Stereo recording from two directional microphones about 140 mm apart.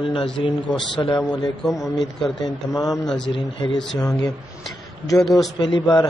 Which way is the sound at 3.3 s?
40° left (ahead or behind).